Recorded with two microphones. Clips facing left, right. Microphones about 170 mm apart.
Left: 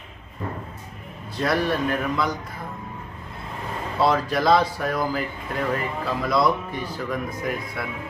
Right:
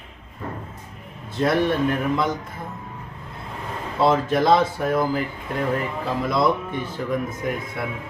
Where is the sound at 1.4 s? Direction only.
25° right (ahead or behind).